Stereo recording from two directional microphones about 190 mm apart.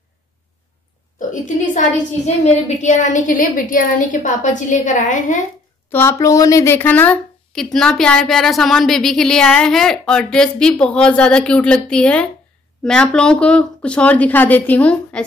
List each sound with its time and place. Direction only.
1.3 s a woman's voice: 40° left (ahead or behind)
5.9 s a woman's voice: 15° left (ahead or behind)